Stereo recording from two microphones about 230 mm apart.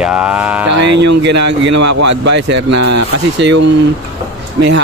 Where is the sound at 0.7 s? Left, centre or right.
Right.